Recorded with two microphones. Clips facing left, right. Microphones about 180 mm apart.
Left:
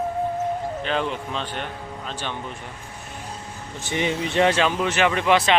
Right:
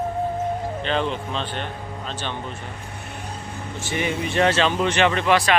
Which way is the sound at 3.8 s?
20° left (ahead or behind).